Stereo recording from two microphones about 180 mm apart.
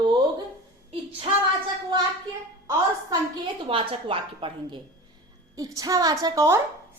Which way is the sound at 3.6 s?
30° right (ahead or behind).